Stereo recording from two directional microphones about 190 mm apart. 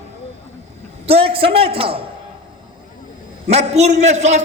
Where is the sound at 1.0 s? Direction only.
30° right (ahead or behind).